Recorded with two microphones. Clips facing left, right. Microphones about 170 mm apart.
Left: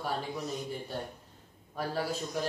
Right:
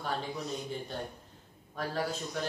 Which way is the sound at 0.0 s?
Centre (ahead or behind).